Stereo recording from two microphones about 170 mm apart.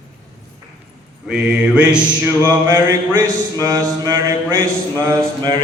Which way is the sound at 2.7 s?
20° right (ahead or behind).